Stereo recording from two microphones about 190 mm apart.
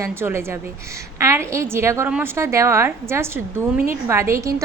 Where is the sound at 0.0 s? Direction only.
10° right (ahead or behind).